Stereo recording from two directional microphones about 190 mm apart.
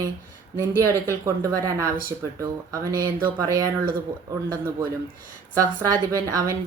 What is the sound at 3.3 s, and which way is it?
Speech, 20° right (ahead or behind).